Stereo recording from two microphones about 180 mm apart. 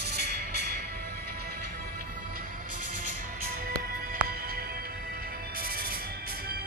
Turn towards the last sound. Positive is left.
turn(degrees=-55)  # may be behind; listen again after turning